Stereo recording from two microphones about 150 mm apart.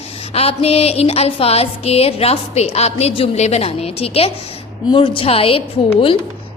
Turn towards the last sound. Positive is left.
turn(degrees=35)  # may be behind; listen again after turning